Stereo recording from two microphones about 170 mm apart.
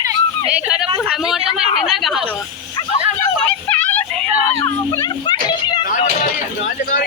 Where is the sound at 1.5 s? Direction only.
Centre (ahead or behind).